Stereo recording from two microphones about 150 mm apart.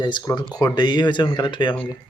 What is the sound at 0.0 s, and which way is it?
Speech, 30° left (ahead or behind).